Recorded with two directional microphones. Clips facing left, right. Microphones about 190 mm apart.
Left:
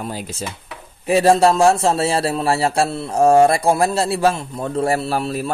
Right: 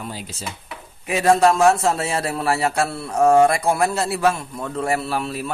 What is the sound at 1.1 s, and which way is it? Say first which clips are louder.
A man's voice: left 3 dB; 30° left (ahead or behind).